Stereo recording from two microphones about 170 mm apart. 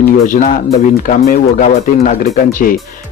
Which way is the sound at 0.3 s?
50° left (ahead or behind).